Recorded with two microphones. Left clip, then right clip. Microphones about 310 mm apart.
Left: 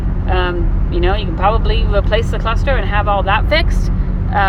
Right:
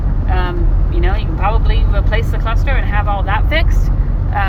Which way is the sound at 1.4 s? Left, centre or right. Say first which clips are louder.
Left 4 dB; left.